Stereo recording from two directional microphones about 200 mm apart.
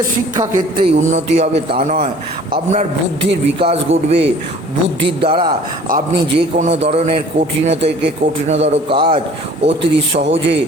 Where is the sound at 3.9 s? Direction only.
70° right (ahead or behind).